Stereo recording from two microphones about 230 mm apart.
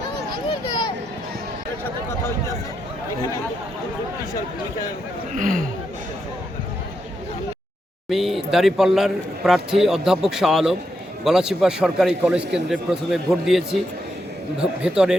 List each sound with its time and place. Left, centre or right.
1.8 s a sound: centre
5.4 s speech: right
8.1 s a man's voice: centre